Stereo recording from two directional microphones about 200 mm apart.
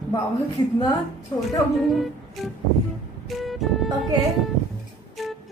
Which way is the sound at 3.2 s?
Centre (ahead or behind).